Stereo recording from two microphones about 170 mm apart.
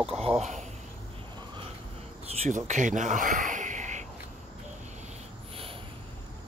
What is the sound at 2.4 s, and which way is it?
Speech, 45° right (ahead or behind).